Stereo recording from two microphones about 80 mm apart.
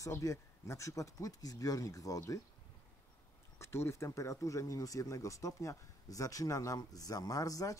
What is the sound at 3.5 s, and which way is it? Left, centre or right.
Speech, left.